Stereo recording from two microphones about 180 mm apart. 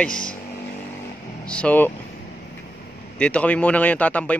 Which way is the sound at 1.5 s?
5° left (ahead or behind).